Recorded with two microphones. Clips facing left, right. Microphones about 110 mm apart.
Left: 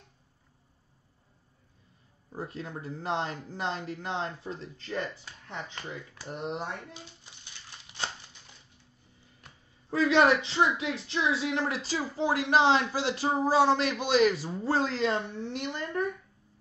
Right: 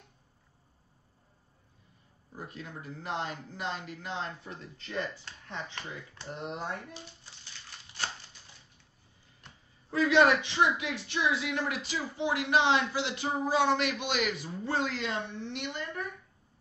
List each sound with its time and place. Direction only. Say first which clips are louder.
2.3 s speech: left 5 dB; 30° left (ahead or behind)
5.2 s speech: left 1 dB; 15° left (ahead or behind)
9.8 s speech: left 1 dB; 25° left (ahead or behind)